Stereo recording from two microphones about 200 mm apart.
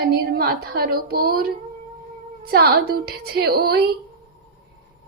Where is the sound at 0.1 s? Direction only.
50° right (ahead or behind).